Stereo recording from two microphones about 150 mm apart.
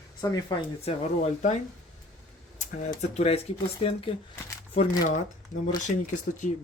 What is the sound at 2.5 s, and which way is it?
Speech, 50° left (ahead or behind).